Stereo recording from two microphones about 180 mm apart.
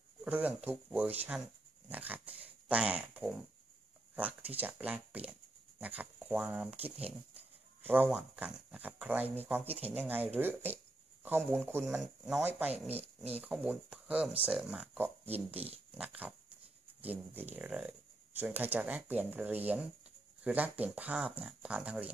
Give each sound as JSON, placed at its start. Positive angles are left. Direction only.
{"t": 0.2, "sound": "speech", "side_deg": -10}